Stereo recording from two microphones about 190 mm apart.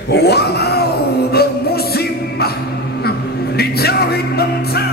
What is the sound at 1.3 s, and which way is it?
Music, 55° left (ahead or behind).